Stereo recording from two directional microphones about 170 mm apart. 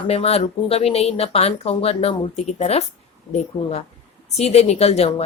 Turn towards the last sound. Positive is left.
turn(degrees=40)  # may be behind; listen again after turning